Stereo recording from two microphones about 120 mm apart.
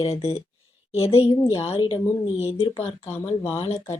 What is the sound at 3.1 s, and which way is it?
Speech, 20° left (ahead or behind).